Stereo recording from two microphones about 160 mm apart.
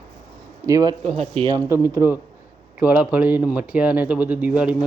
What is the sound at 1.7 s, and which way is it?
Speech, 15° right (ahead or behind).